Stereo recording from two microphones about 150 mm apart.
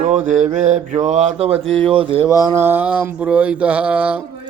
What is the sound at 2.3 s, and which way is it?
Mantra, 20° right (ahead or behind).